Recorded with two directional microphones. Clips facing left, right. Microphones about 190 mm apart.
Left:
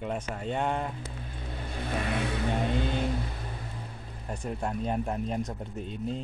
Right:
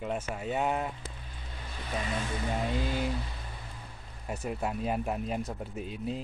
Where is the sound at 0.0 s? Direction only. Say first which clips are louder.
Left 1 dB; 5° right (ahead or behind).